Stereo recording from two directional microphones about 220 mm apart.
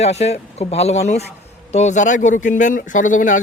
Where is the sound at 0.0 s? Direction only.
30° left (ahead or behind).